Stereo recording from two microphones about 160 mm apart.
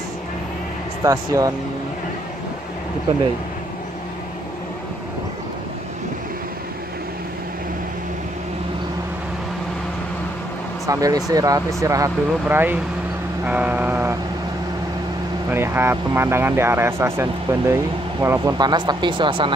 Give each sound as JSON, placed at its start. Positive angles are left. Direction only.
{"t": 1.0, "sound": "speech", "side_deg": -20}
{"t": 10.9, "sound": "speech", "side_deg": -20}
{"t": 15.5, "sound": "speech", "side_deg": -15}